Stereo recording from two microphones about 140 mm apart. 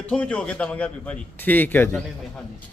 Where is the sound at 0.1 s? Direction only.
10° left (ahead or behind).